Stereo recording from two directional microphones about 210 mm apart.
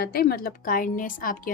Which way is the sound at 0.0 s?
45° left (ahead or behind).